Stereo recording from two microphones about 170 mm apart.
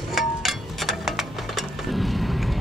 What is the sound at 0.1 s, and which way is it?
Music, centre (ahead or behind).